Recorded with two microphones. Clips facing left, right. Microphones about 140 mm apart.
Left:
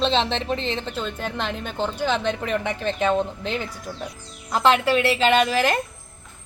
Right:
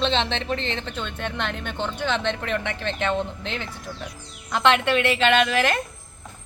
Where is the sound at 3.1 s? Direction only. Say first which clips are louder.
Left 3 dB; 40° left (ahead or behind).